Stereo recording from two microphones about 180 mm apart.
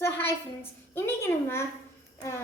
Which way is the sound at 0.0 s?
10° left (ahead or behind).